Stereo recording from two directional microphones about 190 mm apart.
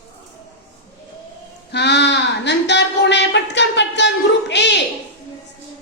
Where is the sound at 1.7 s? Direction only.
60° left (ahead or behind).